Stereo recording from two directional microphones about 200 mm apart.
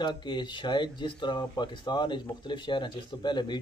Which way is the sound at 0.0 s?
25° left (ahead or behind).